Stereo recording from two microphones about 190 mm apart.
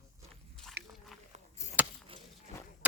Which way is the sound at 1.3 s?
35° right (ahead or behind).